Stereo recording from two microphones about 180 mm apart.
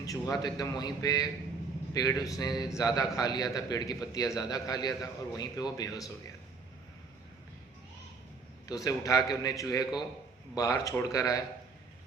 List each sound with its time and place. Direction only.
0.0 s a man's voice: 20° left (ahead or behind)
8.6 s a man's voice: 20° left (ahead or behind)